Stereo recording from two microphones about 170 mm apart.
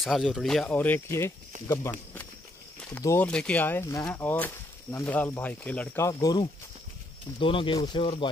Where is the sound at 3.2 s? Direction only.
5° left (ahead or behind).